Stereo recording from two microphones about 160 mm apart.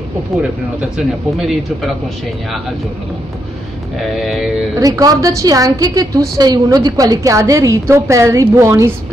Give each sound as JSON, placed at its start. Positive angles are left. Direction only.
{"t": 0.4, "sound": "speech", "side_deg": -5}
{"t": 4.0, "sound": "speech", "side_deg": 0}
{"t": 4.7, "sound": "a woman's voice", "side_deg": -20}